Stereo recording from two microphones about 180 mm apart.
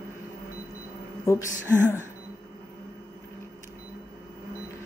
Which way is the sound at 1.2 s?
15° left (ahead or behind).